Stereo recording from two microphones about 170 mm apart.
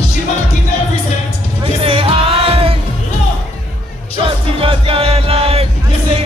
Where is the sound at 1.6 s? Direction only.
30° right (ahead or behind).